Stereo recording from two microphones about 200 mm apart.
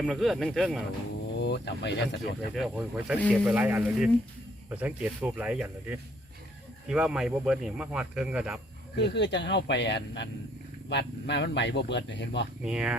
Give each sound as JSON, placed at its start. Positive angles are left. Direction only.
{"t": 0.0, "sound": "speech", "side_deg": 0}
{"t": 1.4, "sound": "speech", "side_deg": 55}
{"t": 2.6, "sound": "speech", "side_deg": -5}
{"t": 9.0, "sound": "speech", "side_deg": 55}
{"t": 12.6, "sound": "speech", "side_deg": -5}